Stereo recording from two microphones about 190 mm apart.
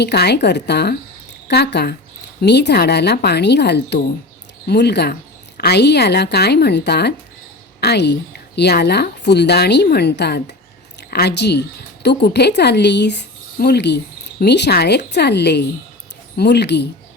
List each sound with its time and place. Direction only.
0.0 s speech: 60° left (ahead or behind)